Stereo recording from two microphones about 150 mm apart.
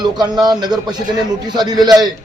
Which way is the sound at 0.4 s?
25° right (ahead or behind).